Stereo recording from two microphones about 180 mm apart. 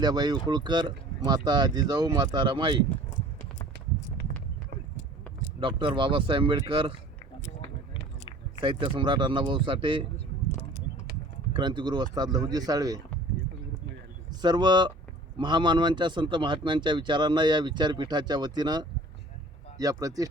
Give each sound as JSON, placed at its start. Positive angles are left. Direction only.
{"t": 0.0, "sound": "speech", "side_deg": -20}
{"t": 5.5, "sound": "speech", "side_deg": -25}
{"t": 8.6, "sound": "speech", "side_deg": -25}
{"t": 11.5, "sound": "speech", "side_deg": -25}
{"t": 14.4, "sound": "speech", "side_deg": -25}